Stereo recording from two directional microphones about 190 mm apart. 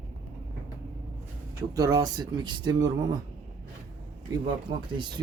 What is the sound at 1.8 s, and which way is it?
Speech, 20° right (ahead or behind).